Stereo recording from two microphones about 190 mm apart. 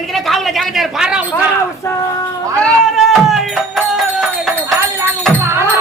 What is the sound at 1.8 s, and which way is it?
Speech, 15° left (ahead or behind).